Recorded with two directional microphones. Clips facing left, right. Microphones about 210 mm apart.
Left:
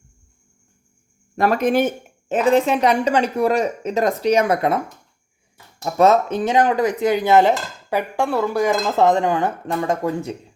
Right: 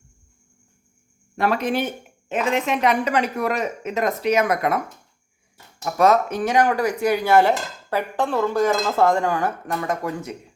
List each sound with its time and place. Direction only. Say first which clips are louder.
1.4 s speech: left 5 dB; 45° left (ahead or behind)
5.8 s speech: left 2 dB; 25° left (ahead or behind)